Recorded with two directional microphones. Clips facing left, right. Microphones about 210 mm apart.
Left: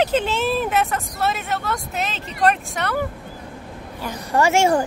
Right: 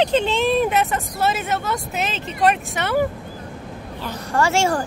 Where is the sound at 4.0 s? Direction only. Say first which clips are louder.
Left 1 dB; 15° left (ahead or behind).